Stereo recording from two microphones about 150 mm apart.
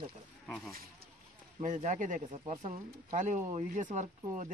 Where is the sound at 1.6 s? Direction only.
55° right (ahead or behind).